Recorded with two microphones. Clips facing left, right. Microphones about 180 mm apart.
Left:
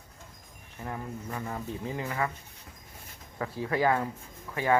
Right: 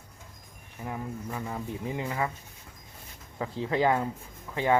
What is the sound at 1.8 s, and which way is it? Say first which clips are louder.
Speech: right 1 dB; 20° right (ahead or behind).